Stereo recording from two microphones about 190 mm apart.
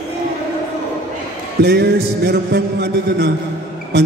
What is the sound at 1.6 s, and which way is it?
A man's voice, 60° right (ahead or behind).